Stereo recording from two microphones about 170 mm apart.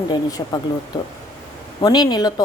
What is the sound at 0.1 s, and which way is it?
Speech, 20° left (ahead or behind).